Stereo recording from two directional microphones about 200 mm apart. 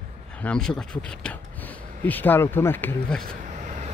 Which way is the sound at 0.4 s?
5° left (ahead or behind).